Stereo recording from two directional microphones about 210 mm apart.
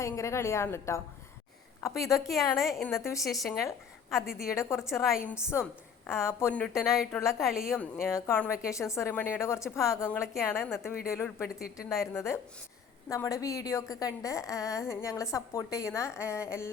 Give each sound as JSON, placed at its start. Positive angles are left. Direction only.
{"t": 0.0, "sound": "a woman's voice", "side_deg": 15}
{"t": 2.6, "sound": "a woman's voice", "side_deg": 0}
{"t": 3.0, "sound": "a woman's voice", "side_deg": 15}
{"t": 4.1, "sound": "a woman's voice", "side_deg": 0}
{"t": 4.4, "sound": "a woman's voice", "side_deg": 15}
{"t": 8.1, "sound": "a woman's voice", "side_deg": 10}
{"t": 11.4, "sound": "a woman's voice", "side_deg": 45}
{"t": 12.1, "sound": "a woman's voice", "side_deg": 10}